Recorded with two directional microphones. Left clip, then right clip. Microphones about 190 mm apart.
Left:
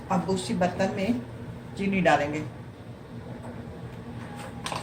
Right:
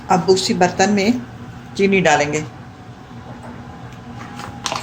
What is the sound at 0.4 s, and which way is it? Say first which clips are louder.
Speech: right 11 dB; 55° right (ahead or behind).